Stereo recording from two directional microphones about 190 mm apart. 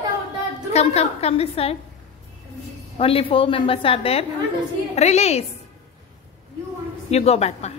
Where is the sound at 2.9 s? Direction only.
30° left (ahead or behind).